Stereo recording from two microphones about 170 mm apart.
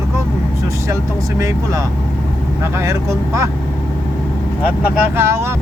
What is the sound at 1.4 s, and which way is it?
Speech, 20° right (ahead or behind).